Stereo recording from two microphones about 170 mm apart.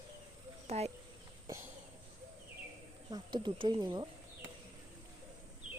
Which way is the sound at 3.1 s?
25° right (ahead or behind).